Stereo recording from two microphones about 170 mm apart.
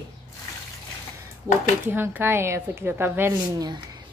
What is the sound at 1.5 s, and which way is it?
A woman's voice, 20° right (ahead or behind).